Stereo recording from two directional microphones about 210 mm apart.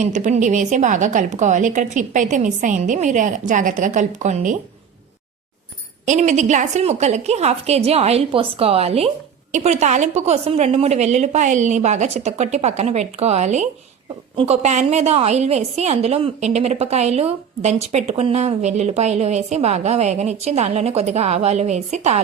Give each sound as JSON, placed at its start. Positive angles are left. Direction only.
{"t": 0.0, "sound": "a woman's voice", "side_deg": -35}
{"t": 6.1, "sound": "a woman's voice", "side_deg": -35}